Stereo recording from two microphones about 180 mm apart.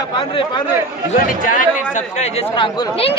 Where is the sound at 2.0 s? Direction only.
40° left (ahead or behind).